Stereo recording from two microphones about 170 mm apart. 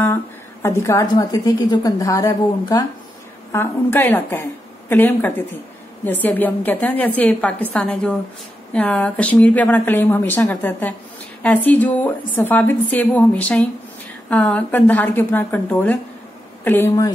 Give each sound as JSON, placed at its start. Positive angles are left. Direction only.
{"t": 0.0, "sound": "a woman's voice", "side_deg": 15}